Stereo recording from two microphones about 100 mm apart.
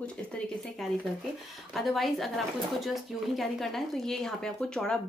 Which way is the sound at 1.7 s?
Centre (ahead or behind).